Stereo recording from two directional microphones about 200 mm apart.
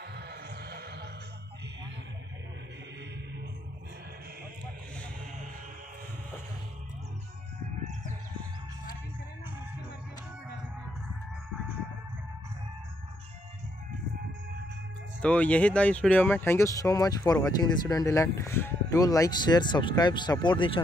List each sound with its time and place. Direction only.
0.0 s music: 55° right (ahead or behind)
11.5 s music: 5° right (ahead or behind)
15.2 s speech: 5° left (ahead or behind); by 20.8 s 25° left (ahead or behind)